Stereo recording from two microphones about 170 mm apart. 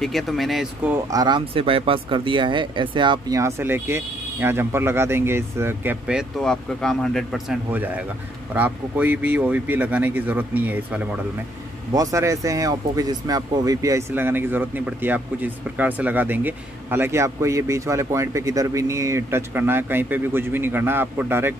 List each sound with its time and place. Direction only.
0.0 s speech: centre (ahead or behind)
1.1 s speech: 25° right (ahead or behind); by 11.1 s 10° right (ahead or behind)
11.9 s speech: 20° right (ahead or behind)